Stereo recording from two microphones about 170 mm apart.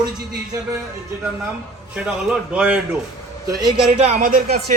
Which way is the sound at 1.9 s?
5° right (ahead or behind).